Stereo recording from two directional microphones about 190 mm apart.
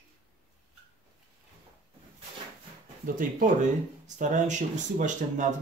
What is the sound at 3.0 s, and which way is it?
Speech, 45° right (ahead or behind).